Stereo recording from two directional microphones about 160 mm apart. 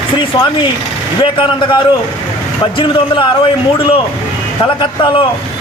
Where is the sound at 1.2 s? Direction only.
30° left (ahead or behind).